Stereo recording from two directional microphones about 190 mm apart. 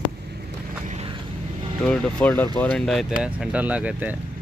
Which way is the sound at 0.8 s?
35° right (ahead or behind).